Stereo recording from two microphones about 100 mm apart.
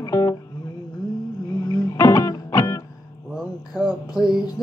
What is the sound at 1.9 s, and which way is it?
Music, 30° left (ahead or behind).